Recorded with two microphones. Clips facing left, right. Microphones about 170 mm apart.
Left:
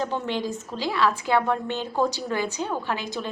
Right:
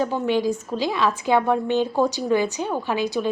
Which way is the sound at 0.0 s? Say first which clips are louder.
Right 6 dB; 10° right (ahead or behind).